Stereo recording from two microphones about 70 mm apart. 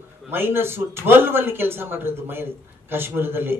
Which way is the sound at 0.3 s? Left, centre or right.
Right.